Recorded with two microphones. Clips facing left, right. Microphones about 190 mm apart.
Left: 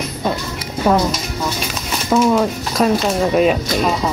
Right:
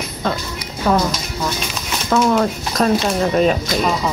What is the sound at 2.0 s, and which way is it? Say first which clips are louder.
Speech: left 1 dB; 5° left (ahead or behind).